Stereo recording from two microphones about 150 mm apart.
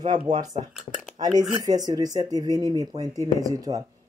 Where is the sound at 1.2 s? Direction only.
25° right (ahead or behind).